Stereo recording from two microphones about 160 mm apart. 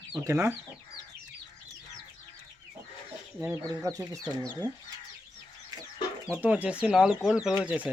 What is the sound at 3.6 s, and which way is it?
Speech, 20° right (ahead or behind).